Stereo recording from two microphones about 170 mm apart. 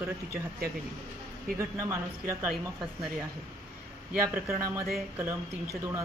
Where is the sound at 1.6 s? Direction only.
15° right (ahead or behind).